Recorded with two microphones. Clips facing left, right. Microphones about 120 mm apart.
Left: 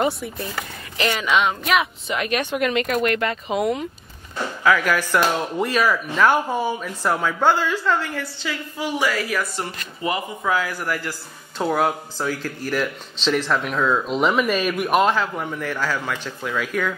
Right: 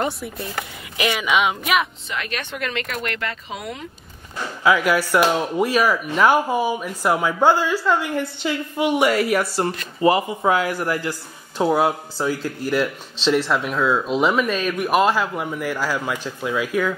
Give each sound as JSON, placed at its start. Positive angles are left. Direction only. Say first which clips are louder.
{"t": 0.0, "sound": "speech", "louder": "left 2 dB", "side_deg": 0}
{"t": 0.9, "sound": "speech", "louder": "even", "side_deg": -10}
{"t": 2.0, "sound": "speech", "louder": "left 5 dB", "side_deg": 20}
{"t": 4.6, "sound": "speech", "louder": "right 2 dB", "side_deg": -10}